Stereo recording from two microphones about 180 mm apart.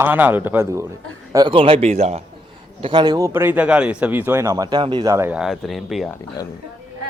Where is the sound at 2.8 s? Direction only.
25° right (ahead or behind).